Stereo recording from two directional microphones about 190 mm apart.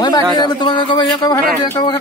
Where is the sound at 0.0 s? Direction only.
20° left (ahead or behind).